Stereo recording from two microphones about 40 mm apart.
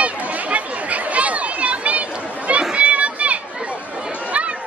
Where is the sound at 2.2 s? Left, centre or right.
Right.